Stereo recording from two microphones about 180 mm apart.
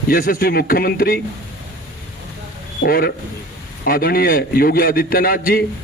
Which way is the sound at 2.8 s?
55° left (ahead or behind).